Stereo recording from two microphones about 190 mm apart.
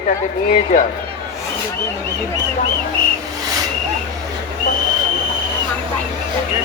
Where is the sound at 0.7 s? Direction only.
40° left (ahead or behind).